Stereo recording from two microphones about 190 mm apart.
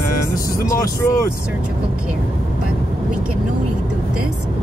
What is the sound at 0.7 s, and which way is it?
Speech, 15° left (ahead or behind).